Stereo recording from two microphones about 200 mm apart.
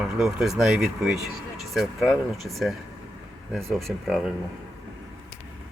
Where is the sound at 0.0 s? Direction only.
5° right (ahead or behind).